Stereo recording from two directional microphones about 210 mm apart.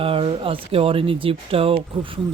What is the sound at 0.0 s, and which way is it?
Speech, 25° right (ahead or behind).